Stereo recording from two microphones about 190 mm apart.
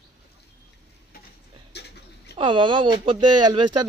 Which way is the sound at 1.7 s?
60° left (ahead or behind).